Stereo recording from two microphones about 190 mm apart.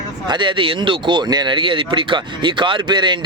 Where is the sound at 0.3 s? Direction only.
25° right (ahead or behind).